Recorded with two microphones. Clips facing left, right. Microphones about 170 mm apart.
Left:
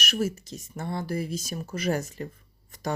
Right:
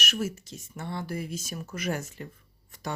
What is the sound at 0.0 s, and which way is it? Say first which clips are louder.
Speech: left 3 dB; 35° left (ahead or behind).